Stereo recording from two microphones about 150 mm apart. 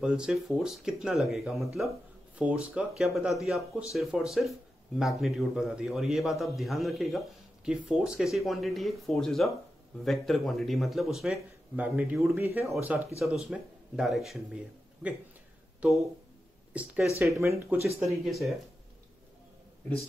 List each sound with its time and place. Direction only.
0.0 s speech: 5° right (ahead or behind)
13.2 s speech: centre (ahead or behind); by 18.0 s 20° right (ahead or behind)
18.0 s speech: centre (ahead or behind)